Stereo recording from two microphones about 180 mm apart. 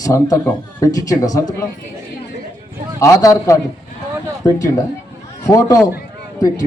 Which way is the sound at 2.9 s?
20° left (ahead or behind).